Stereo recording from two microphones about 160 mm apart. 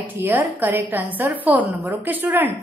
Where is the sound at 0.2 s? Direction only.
10° right (ahead or behind).